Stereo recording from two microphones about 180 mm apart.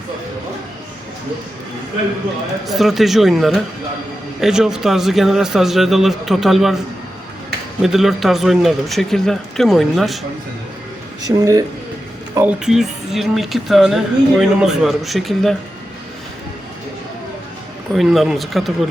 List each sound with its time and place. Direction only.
2.6 s speech: centre (ahead or behind)
7.8 s speech: centre (ahead or behind)
11.2 s speech: 20° right (ahead or behind); by 15.5 s centre (ahead or behind)
17.9 s speech: centre (ahead or behind)